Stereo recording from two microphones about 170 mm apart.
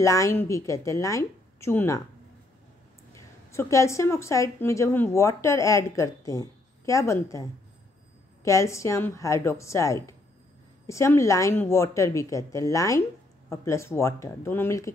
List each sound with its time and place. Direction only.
0.0 s a woman's voice: 20° left (ahead or behind)
3.5 s a woman's voice: 15° left (ahead or behind)
8.5 s a woman's voice: 15° left (ahead or behind)